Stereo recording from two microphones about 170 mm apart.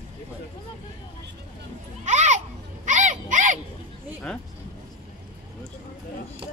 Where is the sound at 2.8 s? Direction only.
45° right (ahead or behind).